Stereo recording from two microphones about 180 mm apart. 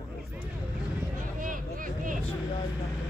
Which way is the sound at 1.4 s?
50° right (ahead or behind).